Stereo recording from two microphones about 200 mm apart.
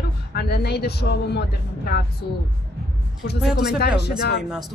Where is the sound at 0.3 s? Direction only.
55° left (ahead or behind).